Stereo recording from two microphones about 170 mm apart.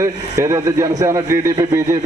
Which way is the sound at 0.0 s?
15° right (ahead or behind).